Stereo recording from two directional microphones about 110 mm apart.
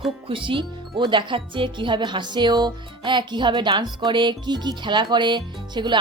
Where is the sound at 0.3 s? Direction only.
50° right (ahead or behind).